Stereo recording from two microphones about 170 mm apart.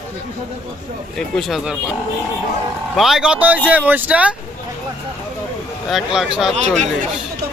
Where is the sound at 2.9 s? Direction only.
Centre (ahead or behind).